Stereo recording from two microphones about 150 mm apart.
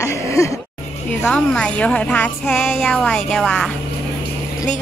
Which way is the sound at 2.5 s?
Centre (ahead or behind).